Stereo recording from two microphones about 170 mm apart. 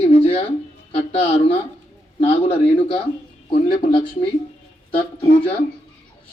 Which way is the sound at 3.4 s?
30° left (ahead or behind).